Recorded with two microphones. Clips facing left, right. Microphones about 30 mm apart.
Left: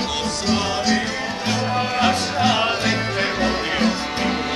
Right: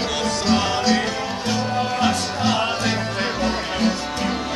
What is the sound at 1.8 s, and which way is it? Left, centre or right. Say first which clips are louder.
Music: left 2 dB; centre.